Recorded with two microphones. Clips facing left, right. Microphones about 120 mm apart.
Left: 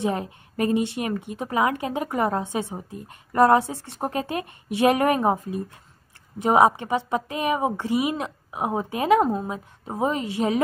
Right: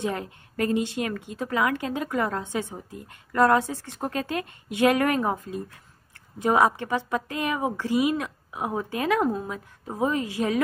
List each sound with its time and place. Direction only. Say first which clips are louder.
0.0 s a woman's voice: left 3 dB; 20° left (ahead or behind)